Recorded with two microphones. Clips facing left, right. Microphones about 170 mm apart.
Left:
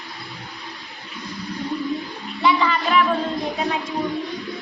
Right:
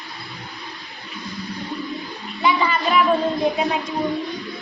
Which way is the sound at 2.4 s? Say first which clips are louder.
Left 1 dB; 15° right (ahead or behind).